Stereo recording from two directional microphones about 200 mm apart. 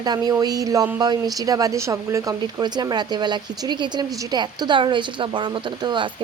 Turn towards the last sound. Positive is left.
turn(degrees=-25)  # may be behind; listen again after turning